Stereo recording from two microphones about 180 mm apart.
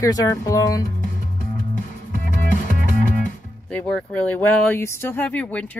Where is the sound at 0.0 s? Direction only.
20° left (ahead or behind).